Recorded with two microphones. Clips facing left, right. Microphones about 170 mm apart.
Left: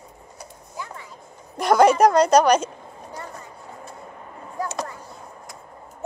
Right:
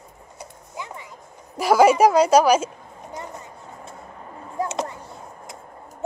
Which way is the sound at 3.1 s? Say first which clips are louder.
Right 2 dB; 20° right (ahead or behind).